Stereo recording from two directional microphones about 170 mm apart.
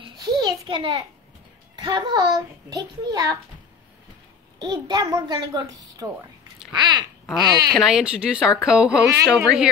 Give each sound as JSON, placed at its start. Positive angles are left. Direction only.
{"t": 0.0, "sound": "a sound", "side_deg": -25}
{"t": 1.8, "sound": "a child's voice", "side_deg": -25}
{"t": 4.6, "sound": "a child's voice", "side_deg": -25}
{"t": 6.7, "sound": "chewing", "side_deg": -25}
{"t": 7.3, "sound": "a child's voice", "side_deg": -25}
{"t": 7.8, "sound": "speech", "side_deg": -5}